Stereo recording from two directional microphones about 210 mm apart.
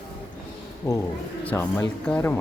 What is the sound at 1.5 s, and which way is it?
Speech, 10° left (ahead or behind).